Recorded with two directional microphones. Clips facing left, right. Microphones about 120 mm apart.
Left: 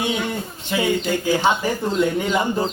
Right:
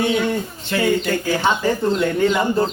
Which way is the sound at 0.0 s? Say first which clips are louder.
Right 5 dB; 15° left (ahead or behind).